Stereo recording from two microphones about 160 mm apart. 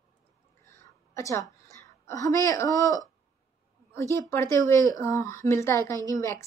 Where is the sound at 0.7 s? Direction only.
20° left (ahead or behind).